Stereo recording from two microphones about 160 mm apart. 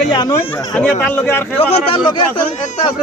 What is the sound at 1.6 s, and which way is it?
Speech, 35° left (ahead or behind).